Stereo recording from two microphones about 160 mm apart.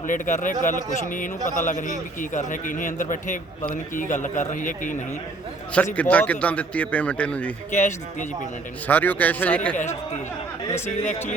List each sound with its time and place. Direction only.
0.1 s a man's voice: 50° left (ahead or behind)
5.7 s speech: 10° left (ahead or behind)
7.7 s a man's voice: 45° left (ahead or behind)
8.9 s speech: 10° left (ahead or behind)